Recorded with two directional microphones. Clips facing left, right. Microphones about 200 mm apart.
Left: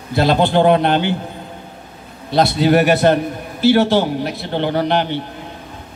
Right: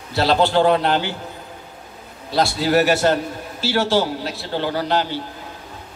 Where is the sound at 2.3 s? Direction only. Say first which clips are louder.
Left 4 dB; 20° left (ahead or behind).